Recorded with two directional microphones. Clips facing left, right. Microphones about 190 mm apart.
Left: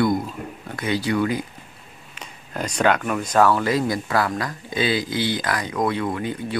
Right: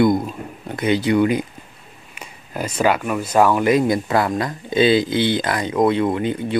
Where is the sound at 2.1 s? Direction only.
10° right (ahead or behind).